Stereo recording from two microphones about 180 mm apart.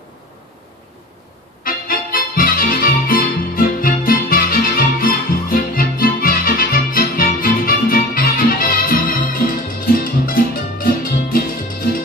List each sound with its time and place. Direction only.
1.6 s music: 50° left (ahead or behind)